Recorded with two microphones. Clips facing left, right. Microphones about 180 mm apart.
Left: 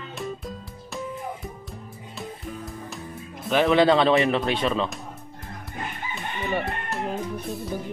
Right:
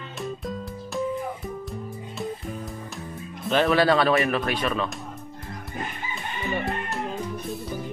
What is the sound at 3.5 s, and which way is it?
Speech, 20° left (ahead or behind).